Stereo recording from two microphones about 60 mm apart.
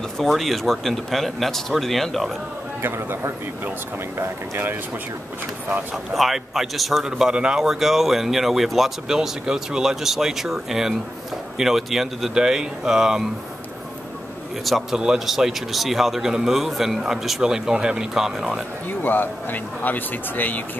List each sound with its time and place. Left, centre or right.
0.2 s a man's voice: centre
2.8 s a man's voice: right
6.1 s a man's voice: centre
14.6 s speech: centre
18.9 s speech: left